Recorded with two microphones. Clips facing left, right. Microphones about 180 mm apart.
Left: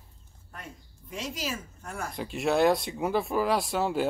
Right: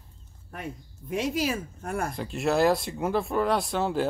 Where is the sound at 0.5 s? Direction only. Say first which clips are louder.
Right 8 dB; 60° right (ahead or behind).